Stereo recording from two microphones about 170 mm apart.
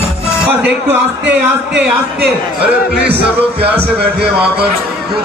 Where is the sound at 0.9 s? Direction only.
10° right (ahead or behind).